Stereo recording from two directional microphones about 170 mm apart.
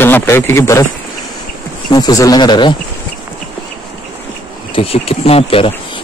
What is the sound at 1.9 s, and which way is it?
Speech, 20° left (ahead or behind).